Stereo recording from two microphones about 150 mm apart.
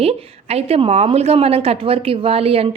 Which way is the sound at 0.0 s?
40° right (ahead or behind).